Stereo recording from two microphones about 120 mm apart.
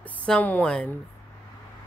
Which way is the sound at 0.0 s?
10° left (ahead or behind).